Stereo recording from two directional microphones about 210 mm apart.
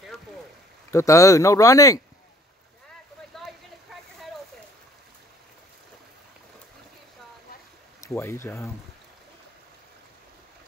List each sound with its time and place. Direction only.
0.9 s speech: 15° left (ahead or behind)
3.9 s a sound: centre (ahead or behind)
8.0 s speech: 10° left (ahead or behind)